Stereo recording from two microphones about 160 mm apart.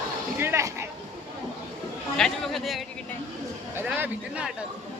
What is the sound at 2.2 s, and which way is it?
Speech, centre (ahead or behind).